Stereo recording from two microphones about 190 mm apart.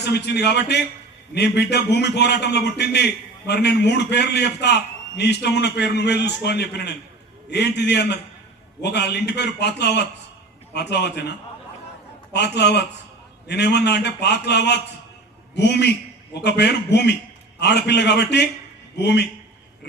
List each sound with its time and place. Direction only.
0.0 s a man's voice: 60° left (ahead or behind)